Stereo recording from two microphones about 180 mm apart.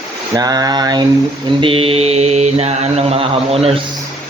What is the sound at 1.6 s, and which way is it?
Mantra, 30° right (ahead or behind).